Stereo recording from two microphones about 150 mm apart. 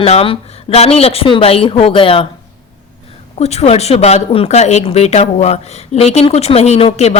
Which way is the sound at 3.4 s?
45° left (ahead or behind).